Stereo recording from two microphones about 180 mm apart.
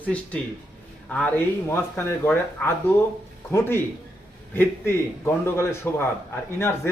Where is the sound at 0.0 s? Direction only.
10° left (ahead or behind).